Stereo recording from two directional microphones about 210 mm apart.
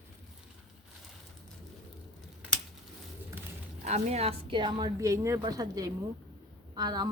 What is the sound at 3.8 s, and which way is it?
A woman's voice, 30° right (ahead or behind).